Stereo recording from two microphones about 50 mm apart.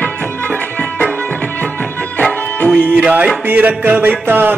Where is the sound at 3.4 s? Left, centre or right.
Right.